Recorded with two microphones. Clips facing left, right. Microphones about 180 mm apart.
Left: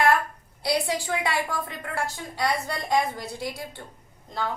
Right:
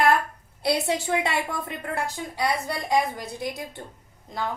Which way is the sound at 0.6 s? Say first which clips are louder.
Right 2 dB; 25° right (ahead or behind).